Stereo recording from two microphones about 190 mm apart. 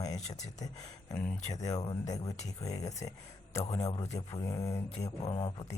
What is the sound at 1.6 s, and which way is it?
Speech, 20° left (ahead or behind).